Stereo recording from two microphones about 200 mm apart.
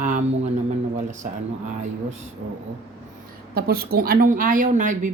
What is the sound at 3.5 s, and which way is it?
A woman's voice, 50° right (ahead or behind).